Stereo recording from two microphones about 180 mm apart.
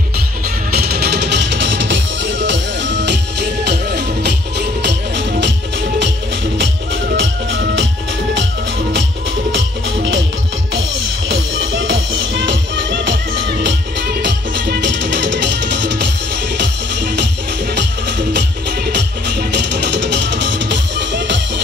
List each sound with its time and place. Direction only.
0.7 s music: 60° right (ahead or behind); by 5.5 s 75° right (ahead or behind)
7.2 s music: 90° right
11.2 s music: 90° right
18.9 s music: 75° right (ahead or behind)